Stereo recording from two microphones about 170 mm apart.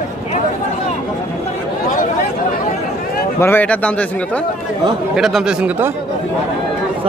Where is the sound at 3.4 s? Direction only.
10° left (ahead or behind).